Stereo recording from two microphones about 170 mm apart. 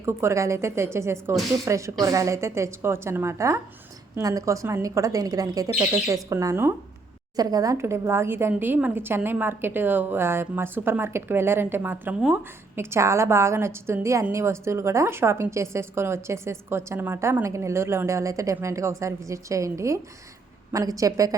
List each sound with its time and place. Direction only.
0.0 s a woman's voice: 15° right (ahead or behind)